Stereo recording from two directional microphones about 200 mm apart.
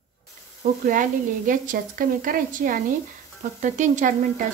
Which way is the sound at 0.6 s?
40° right (ahead or behind).